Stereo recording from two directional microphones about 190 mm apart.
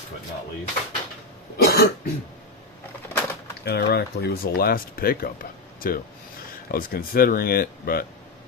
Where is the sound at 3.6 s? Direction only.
60° left (ahead or behind).